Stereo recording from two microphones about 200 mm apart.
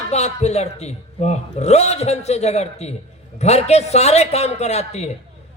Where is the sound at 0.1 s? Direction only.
35° left (ahead or behind).